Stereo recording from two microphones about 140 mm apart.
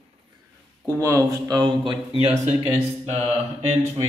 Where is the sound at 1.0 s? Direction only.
20° right (ahead or behind); by 2.4 s 40° right (ahead or behind).